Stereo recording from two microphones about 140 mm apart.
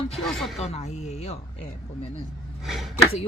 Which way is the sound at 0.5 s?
50° left (ahead or behind).